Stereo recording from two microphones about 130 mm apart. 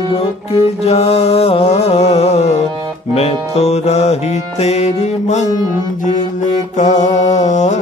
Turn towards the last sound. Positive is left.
turn(degrees=65)  # may be behind; listen again after turning